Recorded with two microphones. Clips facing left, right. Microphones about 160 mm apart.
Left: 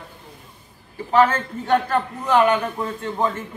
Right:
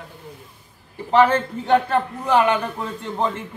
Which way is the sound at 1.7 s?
15° right (ahead or behind).